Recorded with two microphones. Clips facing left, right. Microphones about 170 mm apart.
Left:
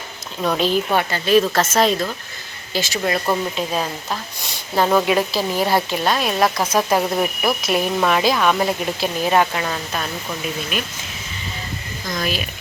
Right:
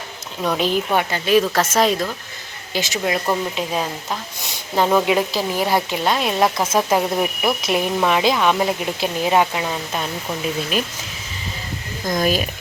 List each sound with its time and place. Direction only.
0.4 s speech: 15° right (ahead or behind)
10.7 s speech: 35° right (ahead or behind)
12.2 s speech: 45° right (ahead or behind)